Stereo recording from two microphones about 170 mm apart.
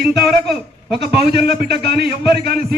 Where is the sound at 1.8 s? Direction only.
75° right (ahead or behind).